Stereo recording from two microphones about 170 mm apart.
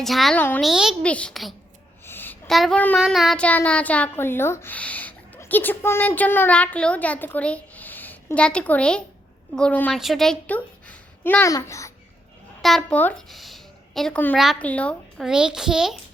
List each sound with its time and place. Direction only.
0.0 s a woman's voice: centre (ahead or behind)
0.6 s a woman's voice: 5° right (ahead or behind)
2.0 s a sound: 10° left (ahead or behind)
2.5 s a woman's voice: centre (ahead or behind); by 11.9 s 20° left (ahead or behind)
12.6 s a woman's voice: 5° left (ahead or behind)
15.3 s a woman's voice: 5° right (ahead or behind)